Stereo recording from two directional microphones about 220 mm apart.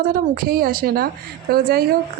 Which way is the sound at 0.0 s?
40° right (ahead or behind).